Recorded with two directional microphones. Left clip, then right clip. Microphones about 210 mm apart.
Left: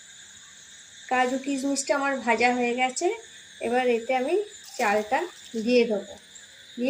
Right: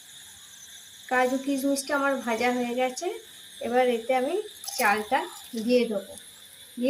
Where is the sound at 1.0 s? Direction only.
10° right (ahead or behind).